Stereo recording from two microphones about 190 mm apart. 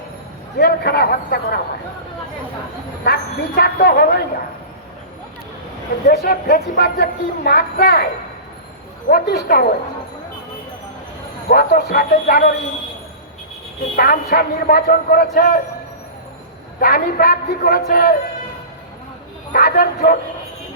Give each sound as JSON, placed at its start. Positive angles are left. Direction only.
{"t": 0.6, "sound": "speech", "side_deg": 55}
{"t": 3.0, "sound": "speech", "side_deg": 55}
{"t": 6.1, "sound": "speech", "side_deg": 50}
{"t": 9.0, "sound": "speech", "side_deg": 55}
{"t": 11.4, "sound": "speech", "side_deg": 55}
{"t": 13.9, "sound": "speech", "side_deg": 55}
{"t": 16.8, "sound": "speech", "side_deg": 55}
{"t": 19.5, "sound": "speech", "side_deg": 55}